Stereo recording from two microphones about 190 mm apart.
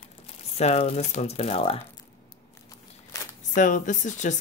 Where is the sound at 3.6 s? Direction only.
40° left (ahead or behind).